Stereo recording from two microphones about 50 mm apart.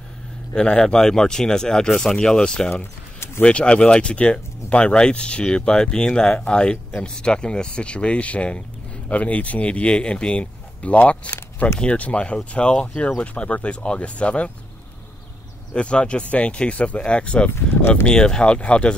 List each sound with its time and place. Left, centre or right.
0.6 s speech: centre
15.7 s speech: left